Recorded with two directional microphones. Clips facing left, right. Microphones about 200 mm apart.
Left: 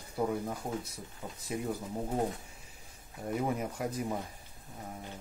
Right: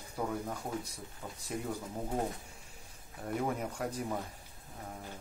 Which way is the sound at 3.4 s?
5° left (ahead or behind).